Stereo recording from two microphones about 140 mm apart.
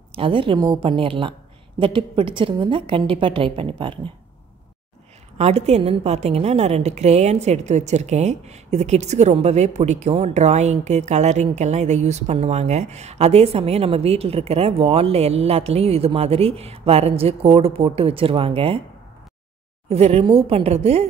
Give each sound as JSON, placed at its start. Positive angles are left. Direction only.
{"t": 0.1, "sound": "a woman's voice", "side_deg": -40}
{"t": 5.4, "sound": "a woman's voice", "side_deg": -50}
{"t": 19.9, "sound": "a woman's voice", "side_deg": -45}